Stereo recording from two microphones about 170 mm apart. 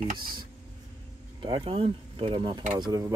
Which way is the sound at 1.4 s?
30° right (ahead or behind).